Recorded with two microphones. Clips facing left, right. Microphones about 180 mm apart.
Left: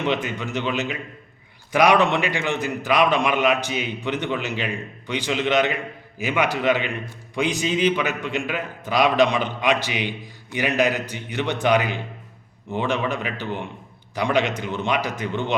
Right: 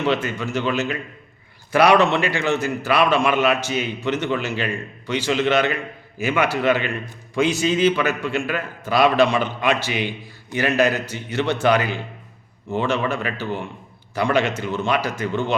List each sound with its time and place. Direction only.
0.0 s a man's voice: 15° left (ahead or behind)